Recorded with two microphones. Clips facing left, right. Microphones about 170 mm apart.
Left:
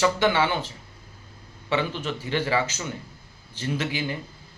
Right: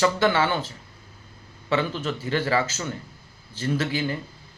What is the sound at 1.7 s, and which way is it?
Speech, 15° left (ahead or behind).